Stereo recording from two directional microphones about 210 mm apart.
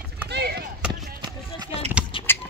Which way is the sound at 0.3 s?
50° right (ahead or behind).